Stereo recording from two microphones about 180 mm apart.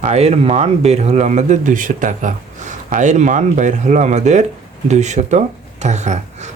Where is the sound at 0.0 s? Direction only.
35° right (ahead or behind).